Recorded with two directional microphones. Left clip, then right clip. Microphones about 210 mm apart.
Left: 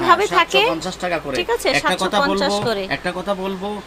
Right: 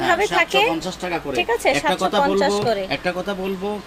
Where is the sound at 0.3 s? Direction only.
10° left (ahead or behind).